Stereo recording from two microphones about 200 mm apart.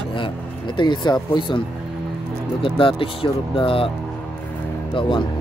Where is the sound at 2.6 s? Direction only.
25° left (ahead or behind).